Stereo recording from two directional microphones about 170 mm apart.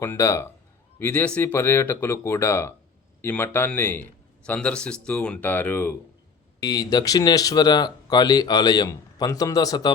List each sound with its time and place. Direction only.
0.0 s speech: 15° left (ahead or behind)
6.6 s speech: 20° left (ahead or behind)